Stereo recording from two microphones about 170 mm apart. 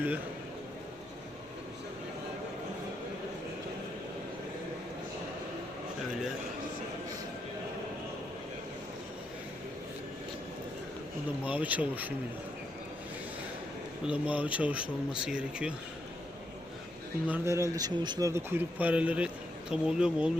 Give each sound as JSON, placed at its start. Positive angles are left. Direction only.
{"t": 11.4, "sound": "speech", "side_deg": -10}
{"t": 14.1, "sound": "speech", "side_deg": -10}
{"t": 17.2, "sound": "speech", "side_deg": -10}